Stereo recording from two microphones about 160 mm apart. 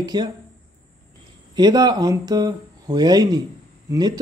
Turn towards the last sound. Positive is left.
turn(degrees=-25)  # may be behind; listen again after turning